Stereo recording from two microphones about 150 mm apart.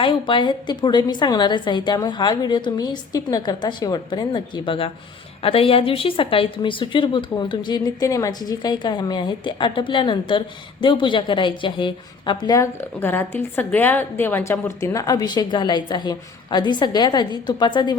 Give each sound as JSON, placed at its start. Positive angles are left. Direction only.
{"t": 0.0, "sound": "a woman's voice", "side_deg": 35}
{"t": 13.0, "sound": "a woman's voice", "side_deg": 15}